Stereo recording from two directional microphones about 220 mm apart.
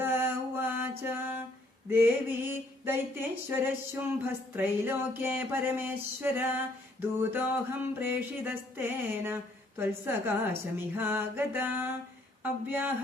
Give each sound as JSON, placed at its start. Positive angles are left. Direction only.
{"t": 0.0, "sound": "mantra", "side_deg": -10}
{"t": 1.0, "sound": "music", "side_deg": -10}
{"t": 1.9, "sound": "a sound", "side_deg": -10}